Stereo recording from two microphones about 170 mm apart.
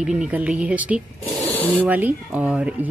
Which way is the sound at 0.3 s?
10° right (ahead or behind).